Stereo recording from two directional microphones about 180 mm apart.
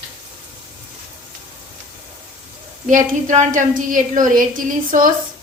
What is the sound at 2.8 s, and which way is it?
A woman's voice, 45° right (ahead or behind).